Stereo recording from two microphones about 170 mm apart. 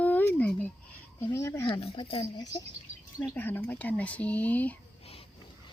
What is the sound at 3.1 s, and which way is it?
Speech, 10° left (ahead or behind).